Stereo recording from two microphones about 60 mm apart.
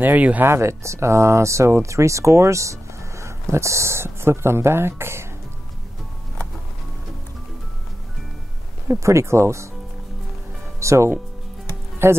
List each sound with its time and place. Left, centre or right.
0.0 s speech: right
0.5 s speech: right
8.8 s speech: right
10.8 s speech: right
12.0 s speech: right